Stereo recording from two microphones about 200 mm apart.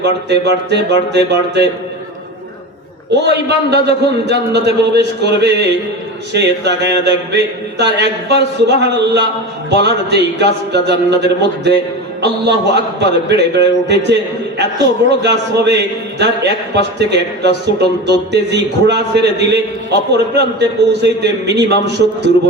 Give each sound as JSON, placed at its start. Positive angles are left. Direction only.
{"t": 0.0, "sound": "a man's voice", "side_deg": -60}
{"t": 3.2, "sound": "a man's voice", "side_deg": -60}
{"t": 15.2, "sound": "a man's voice", "side_deg": -55}